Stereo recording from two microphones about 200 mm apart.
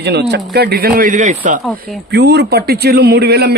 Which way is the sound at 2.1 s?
55° right (ahead or behind).